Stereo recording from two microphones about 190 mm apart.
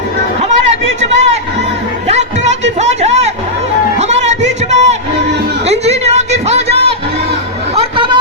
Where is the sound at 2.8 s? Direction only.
35° right (ahead or behind).